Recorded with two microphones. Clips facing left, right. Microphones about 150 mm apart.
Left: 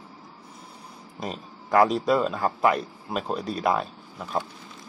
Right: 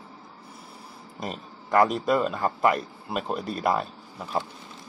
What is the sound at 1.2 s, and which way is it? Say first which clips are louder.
Speech: left 1 dB; centre (ahead or behind).